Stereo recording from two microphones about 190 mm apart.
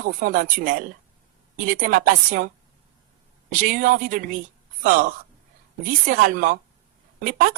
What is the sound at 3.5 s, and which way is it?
Speech, 45° right (ahead or behind).